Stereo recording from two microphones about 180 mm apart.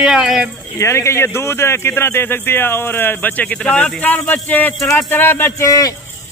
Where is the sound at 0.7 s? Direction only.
15° left (ahead or behind).